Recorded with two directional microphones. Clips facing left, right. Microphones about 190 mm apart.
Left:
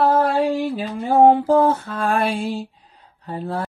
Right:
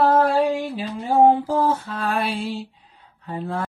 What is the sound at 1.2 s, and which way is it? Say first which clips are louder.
Mantra: left 3 dB; 65° left (ahead or behind).